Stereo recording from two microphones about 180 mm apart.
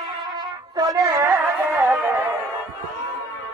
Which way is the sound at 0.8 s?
20° right (ahead or behind).